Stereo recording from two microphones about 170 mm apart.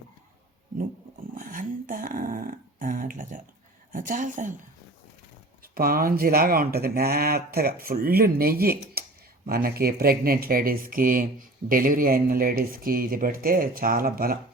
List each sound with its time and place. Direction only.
1.4 s a sound: 50° right (ahead or behind)
3.9 s a woman's voice: 50° right (ahead or behind)
5.6 s speech: 60° right (ahead or behind)